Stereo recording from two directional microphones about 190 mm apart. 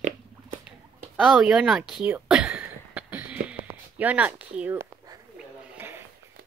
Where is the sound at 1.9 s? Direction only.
5° right (ahead or behind).